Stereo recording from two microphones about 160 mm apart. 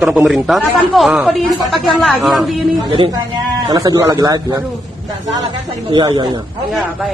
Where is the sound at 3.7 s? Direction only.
20° right (ahead or behind).